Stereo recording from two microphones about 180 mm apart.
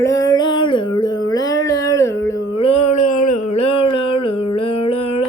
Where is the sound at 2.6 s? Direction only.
35° left (ahead or behind).